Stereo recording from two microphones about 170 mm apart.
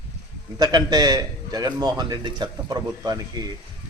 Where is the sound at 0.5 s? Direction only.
25° right (ahead or behind).